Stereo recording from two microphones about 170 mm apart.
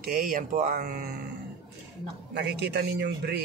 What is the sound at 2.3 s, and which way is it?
Speech, 90° right.